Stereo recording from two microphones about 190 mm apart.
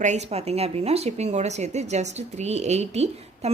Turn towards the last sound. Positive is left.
turn(degrees=-35)  # may be behind; listen again after turning